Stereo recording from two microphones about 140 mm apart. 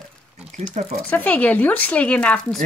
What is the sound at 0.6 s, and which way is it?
Speech, 50° right (ahead or behind).